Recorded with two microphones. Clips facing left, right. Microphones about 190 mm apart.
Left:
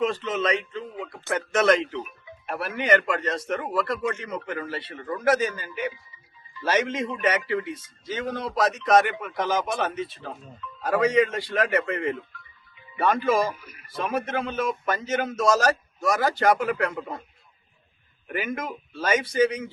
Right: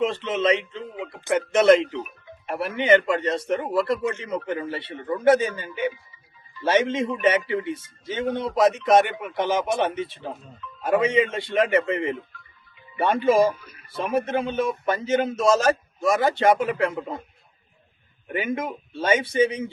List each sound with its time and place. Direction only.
0.3 s speech: 30° right (ahead or behind)
17.0 s a man's voice: centre (ahead or behind)
18.3 s speech: 25° right (ahead or behind)